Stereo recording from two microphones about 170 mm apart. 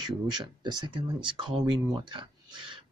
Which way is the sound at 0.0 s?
25° right (ahead or behind).